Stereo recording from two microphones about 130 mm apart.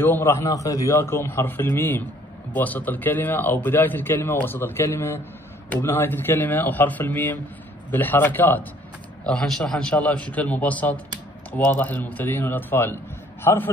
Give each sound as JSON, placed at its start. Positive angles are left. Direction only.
{"t": 0.0, "sound": "a man's voice", "side_deg": 15}